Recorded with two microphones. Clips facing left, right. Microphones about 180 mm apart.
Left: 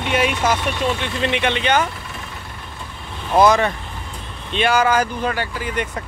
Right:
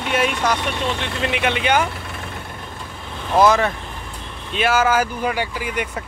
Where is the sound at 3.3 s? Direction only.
Centre (ahead or behind).